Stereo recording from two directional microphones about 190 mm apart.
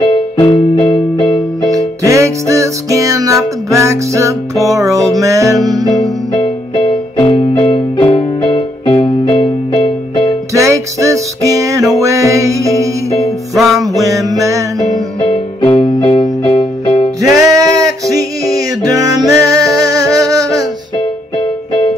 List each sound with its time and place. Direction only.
0.1 s music: 25° left (ahead or behind)
2.0 s music: 15° right (ahead or behind)
7.2 s music: 30° left (ahead or behind)
10.5 s music: 15° right (ahead or behind)
13.6 s music: centre (ahead or behind)
14.0 s music: 20° right (ahead or behind)
15.3 s music: 30° left (ahead or behind)
17.2 s music: 15° right (ahead or behind)